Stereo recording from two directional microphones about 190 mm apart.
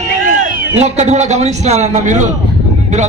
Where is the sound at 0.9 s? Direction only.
35° right (ahead or behind).